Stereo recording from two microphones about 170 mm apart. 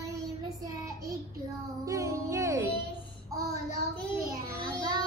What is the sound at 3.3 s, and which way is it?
Child singing, 20° right (ahead or behind).